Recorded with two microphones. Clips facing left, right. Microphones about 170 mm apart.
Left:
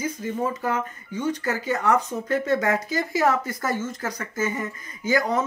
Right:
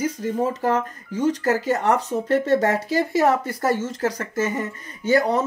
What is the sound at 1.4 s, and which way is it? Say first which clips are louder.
Speech: right 1 dB; 40° right (ahead or behind).